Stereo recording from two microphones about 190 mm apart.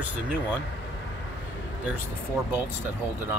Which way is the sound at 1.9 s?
10° right (ahead or behind).